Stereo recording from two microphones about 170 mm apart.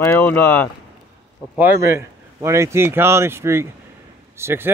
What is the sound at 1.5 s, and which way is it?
Speech, 15° right (ahead or behind).